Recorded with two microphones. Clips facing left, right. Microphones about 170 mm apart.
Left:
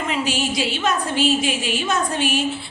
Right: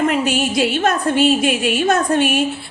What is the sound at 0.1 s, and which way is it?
A woman's voice, 55° right (ahead or behind).